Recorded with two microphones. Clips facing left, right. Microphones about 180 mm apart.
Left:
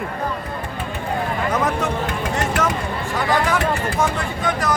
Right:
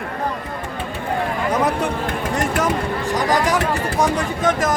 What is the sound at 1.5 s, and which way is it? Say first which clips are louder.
Speech: right 2 dB; 10° right (ahead or behind).